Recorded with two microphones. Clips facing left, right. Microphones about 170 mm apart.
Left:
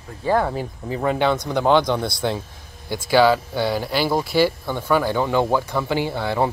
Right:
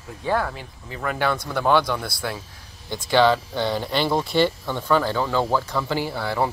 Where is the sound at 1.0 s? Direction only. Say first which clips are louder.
Left 4 dB; 25° left (ahead or behind).